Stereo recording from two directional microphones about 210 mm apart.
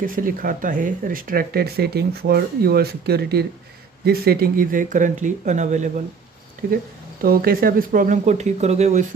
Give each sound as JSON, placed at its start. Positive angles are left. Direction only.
{"t": 0.0, "sound": "speech", "side_deg": -40}
{"t": 7.2, "sound": "speech", "side_deg": -45}